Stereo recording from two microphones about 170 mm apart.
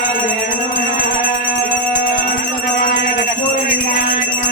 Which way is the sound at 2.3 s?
50° left (ahead or behind).